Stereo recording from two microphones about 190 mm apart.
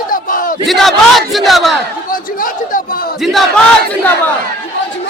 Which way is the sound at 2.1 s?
45° left (ahead or behind).